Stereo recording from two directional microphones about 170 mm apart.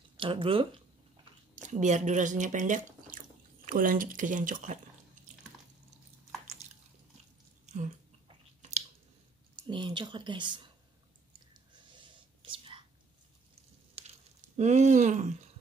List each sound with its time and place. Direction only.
0.2 s speech: 30° right (ahead or behind)
1.5 s speech: 45° right (ahead or behind)
7.6 s a sound: 45° right (ahead or behind)
9.6 s speech: 30° right (ahead or behind)
11.9 s whispering: 30° right (ahead or behind)
14.0 s a sound: 35° right (ahead or behind)
14.6 s speech: 45° right (ahead or behind)